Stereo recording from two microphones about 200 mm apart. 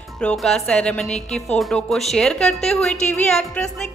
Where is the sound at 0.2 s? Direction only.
5° left (ahead or behind).